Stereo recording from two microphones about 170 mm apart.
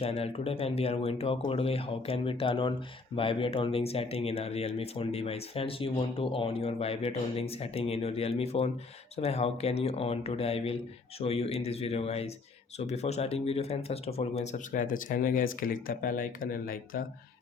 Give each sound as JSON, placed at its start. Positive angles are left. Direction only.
{"t": 0.0, "sound": "speech", "side_deg": 35}